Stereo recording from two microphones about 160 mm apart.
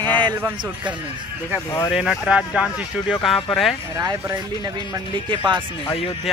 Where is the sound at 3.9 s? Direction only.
20° right (ahead or behind).